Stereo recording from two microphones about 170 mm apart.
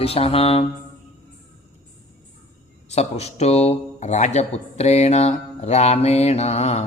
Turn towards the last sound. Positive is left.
turn(degrees=40)  # may be behind; listen again after turning